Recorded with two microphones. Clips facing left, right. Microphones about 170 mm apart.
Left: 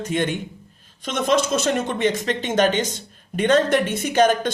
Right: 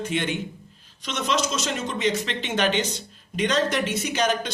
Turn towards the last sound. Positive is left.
turn(degrees=50)  # may be behind; listen again after turning